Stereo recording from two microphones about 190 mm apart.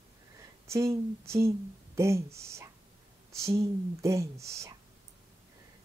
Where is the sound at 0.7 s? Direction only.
15° right (ahead or behind).